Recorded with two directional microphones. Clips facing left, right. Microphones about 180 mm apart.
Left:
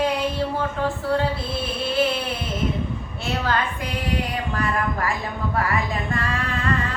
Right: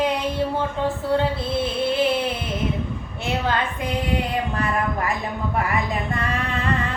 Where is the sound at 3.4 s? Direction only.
20° right (ahead or behind).